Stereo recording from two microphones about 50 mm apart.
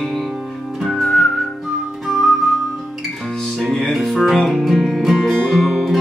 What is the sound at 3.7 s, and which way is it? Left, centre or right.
Music, centre.